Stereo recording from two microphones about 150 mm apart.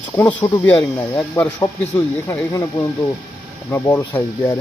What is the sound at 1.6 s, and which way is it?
Speech, 20° left (ahead or behind).